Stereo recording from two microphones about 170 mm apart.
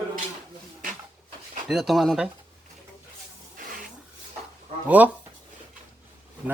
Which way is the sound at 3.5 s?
55° right (ahead or behind).